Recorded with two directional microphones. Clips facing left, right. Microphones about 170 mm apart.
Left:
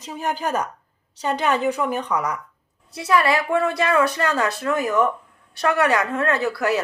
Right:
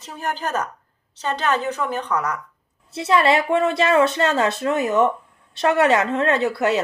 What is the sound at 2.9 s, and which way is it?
A woman's voice, 25° right (ahead or behind).